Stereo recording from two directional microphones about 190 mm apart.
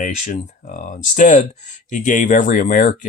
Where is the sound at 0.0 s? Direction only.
45° left (ahead or behind).